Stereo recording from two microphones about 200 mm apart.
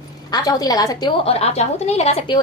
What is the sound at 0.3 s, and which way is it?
A woman's voice, 20° left (ahead or behind).